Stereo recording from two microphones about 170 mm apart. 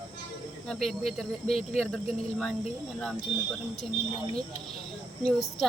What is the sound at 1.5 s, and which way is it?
Speech, 35° left (ahead or behind).